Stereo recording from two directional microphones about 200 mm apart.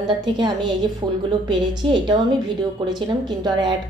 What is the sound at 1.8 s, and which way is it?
Speech, 25° right (ahead or behind).